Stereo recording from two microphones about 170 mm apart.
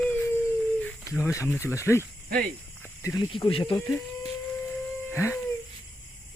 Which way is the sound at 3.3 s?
30° left (ahead or behind).